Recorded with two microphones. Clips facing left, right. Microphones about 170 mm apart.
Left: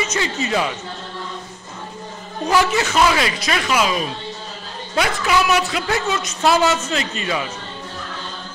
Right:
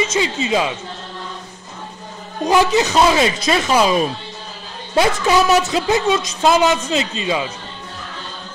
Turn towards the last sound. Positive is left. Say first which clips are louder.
# right 3 dB
turn(degrees=-20)  # may be behind; listen again after turning